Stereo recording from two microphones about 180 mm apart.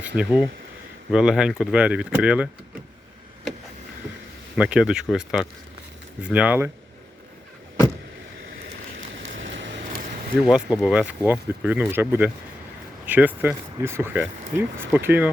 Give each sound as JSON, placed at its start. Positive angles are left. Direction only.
{"t": 0.2, "sound": "speech", "side_deg": -5}
{"t": 4.5, "sound": "speech", "side_deg": -5}
{"t": 9.3, "sound": "vehicle", "side_deg": -90}
{"t": 10.0, "sound": "a sound", "side_deg": -45}
{"t": 10.4, "sound": "speech", "side_deg": -5}